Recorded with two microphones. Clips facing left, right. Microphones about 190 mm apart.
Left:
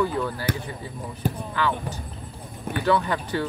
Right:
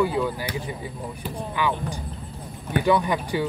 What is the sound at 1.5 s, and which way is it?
Speech, 15° right (ahead or behind).